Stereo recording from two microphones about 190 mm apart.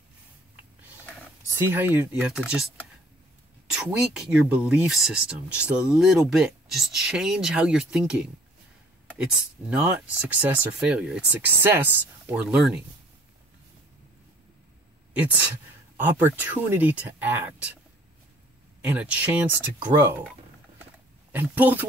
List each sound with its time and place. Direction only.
1.5 s speech: 10° right (ahead or behind)
3.7 s speech: 5° right (ahead or behind)
16.2 s speech: 10° right (ahead or behind)
18.8 s speech: 5° right (ahead or behind)
21.3 s speech: 10° right (ahead or behind)